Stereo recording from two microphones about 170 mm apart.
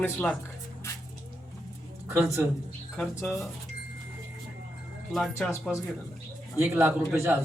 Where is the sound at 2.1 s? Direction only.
15° right (ahead or behind).